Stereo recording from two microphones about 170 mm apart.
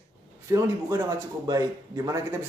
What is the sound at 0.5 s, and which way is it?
A man's voice, 20° right (ahead or behind).